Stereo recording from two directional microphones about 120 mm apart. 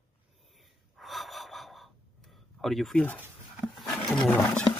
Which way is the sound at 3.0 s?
10° left (ahead or behind).